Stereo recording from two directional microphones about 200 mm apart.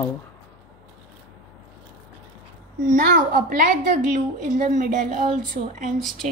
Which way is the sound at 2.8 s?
40° right (ahead or behind).